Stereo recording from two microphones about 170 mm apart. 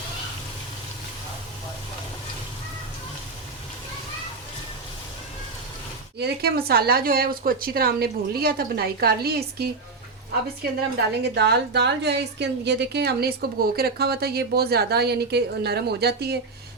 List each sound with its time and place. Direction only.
6.1 s speech: 70° right (ahead or behind)
11.2 s a woman's voice: 80° right